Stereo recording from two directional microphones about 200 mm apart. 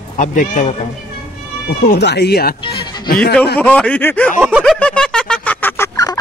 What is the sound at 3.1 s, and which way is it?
Speech, 45° left (ahead or behind).